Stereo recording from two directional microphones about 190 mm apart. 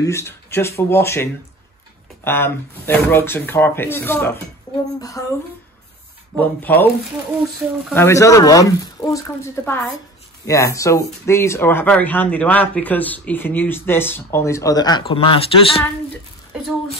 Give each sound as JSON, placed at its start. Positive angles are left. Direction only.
{"t": 0.0, "sound": "speech", "side_deg": 15}
{"t": 6.3, "sound": "speech", "side_deg": 10}
{"t": 7.9, "sound": "speech", "side_deg": 15}